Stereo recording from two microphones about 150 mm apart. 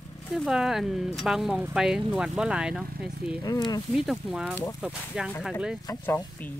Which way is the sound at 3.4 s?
25° left (ahead or behind).